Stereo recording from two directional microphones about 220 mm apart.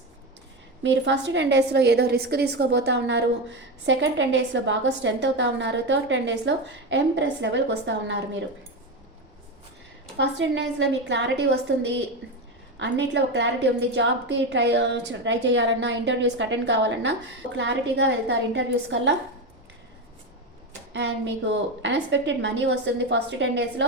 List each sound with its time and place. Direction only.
0.8 s a woman's voice: 55° right (ahead or behind)
10.2 s a woman's voice: 55° right (ahead or behind)
20.9 s a woman's voice: 50° right (ahead or behind)